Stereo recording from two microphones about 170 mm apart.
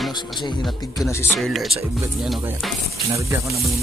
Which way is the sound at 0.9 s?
15° left (ahead or behind).